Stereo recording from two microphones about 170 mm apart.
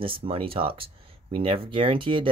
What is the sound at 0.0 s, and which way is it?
Speech, 30° right (ahead or behind).